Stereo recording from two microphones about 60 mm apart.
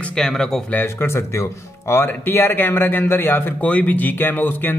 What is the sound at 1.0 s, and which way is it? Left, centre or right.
Speech, left.